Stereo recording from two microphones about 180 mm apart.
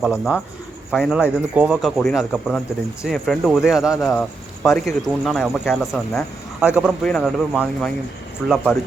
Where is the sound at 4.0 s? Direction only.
15° left (ahead or behind).